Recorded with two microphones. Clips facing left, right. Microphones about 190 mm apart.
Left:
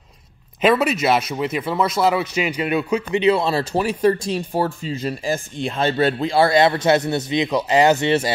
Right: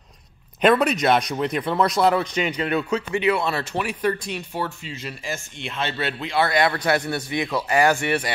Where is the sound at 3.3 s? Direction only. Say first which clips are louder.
Left 5 dB; 35° left (ahead or behind).